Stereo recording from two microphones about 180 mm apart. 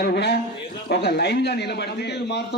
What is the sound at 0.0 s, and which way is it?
A man's voice, 65° left (ahead or behind).